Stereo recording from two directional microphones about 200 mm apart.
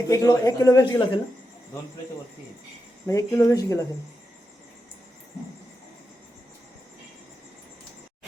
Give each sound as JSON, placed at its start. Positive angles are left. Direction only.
{"t": 0.1, "sound": "a woman's voice", "side_deg": 15}
{"t": 3.1, "sound": "a woman's voice", "side_deg": 15}